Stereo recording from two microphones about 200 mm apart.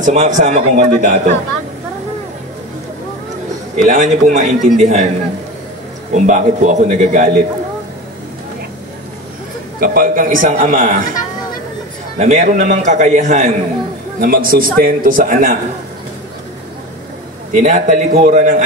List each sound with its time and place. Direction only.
0.0 s a man's voice: 35° right (ahead or behind)
3.7 s a man's voice: 40° right (ahead or behind)
6.1 s a man's voice: 35° right (ahead or behind)
9.8 s a man's voice: 45° right (ahead or behind)
12.2 s a man's voice: 35° right (ahead or behind)
14.2 s a man's voice: 45° right (ahead or behind)
17.5 s a man's voice: 40° right (ahead or behind)